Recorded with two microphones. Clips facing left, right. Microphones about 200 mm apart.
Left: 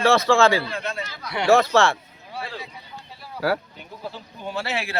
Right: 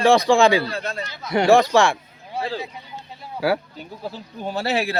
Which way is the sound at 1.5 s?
15° right (ahead or behind).